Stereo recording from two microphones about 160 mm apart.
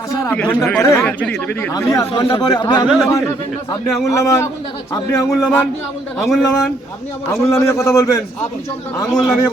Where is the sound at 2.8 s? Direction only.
Centre (ahead or behind).